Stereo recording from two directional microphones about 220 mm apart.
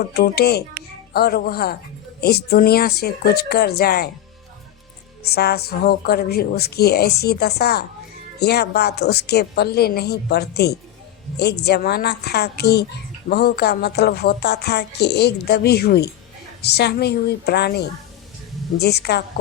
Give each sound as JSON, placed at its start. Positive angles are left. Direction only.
{"t": 0.1, "sound": "speech", "side_deg": 45}
{"t": 5.2, "sound": "speech", "side_deg": 45}